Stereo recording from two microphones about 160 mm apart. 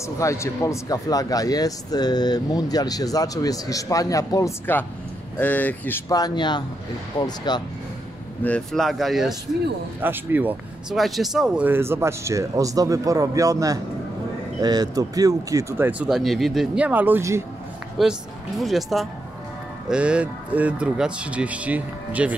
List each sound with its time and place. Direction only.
0.2 s speech: 20° left (ahead or behind)
8.5 s speech: 5° left (ahead or behind)
9.9 s speech: 10° right (ahead or behind)
11.0 s speech: centre (ahead or behind); by 15.9 s 20° right (ahead or behind)
15.9 s speech: 5° right (ahead or behind)
18.0 s speech: centre (ahead or behind)